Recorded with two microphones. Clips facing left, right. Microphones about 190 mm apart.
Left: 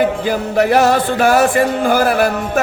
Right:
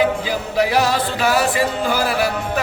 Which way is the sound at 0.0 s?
55° left (ahead or behind).